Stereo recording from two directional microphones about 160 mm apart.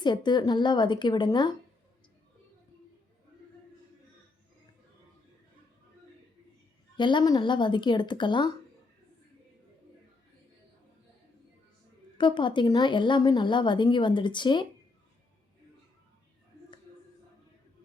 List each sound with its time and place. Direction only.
0.0 s a woman's voice: 30° left (ahead or behind)
6.9 s a woman's voice: 30° left (ahead or behind)
12.1 s a woman's voice: 30° left (ahead or behind)